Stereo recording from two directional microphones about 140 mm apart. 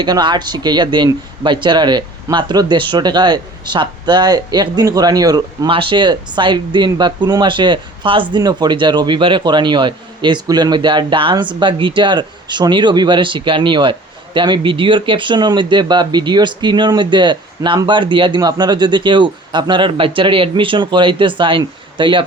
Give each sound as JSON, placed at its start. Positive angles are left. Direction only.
{"t": 0.0, "sound": "speech", "side_deg": -30}
{"t": 5.7, "sound": "speech", "side_deg": -35}